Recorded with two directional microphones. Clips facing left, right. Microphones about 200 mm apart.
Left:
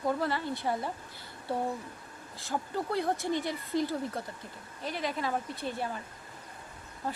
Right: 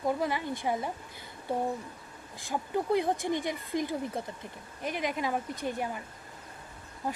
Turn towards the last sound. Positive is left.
turn(degrees=-15)  # may be behind; listen again after turning